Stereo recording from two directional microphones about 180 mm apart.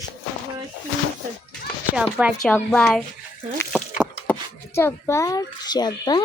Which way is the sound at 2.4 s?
5° left (ahead or behind).